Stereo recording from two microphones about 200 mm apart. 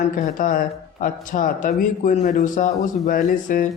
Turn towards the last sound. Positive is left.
turn(degrees=40)  # may be behind; listen again after turning